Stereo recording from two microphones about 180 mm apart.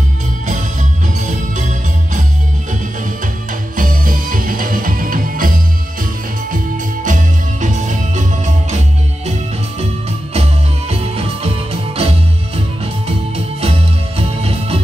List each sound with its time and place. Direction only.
1.2 s music: 40° right (ahead or behind)
3.7 s music: 50° right (ahead or behind)
7.1 s music: 45° right (ahead or behind)
10.3 s music: 35° right (ahead or behind)